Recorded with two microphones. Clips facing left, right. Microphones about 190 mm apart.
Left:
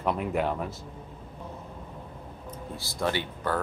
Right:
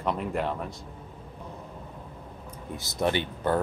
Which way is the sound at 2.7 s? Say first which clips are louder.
Right 3 dB; 20° right (ahead or behind).